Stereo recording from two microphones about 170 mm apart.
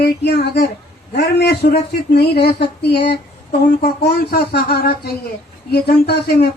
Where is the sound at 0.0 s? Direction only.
70° left (ahead or behind).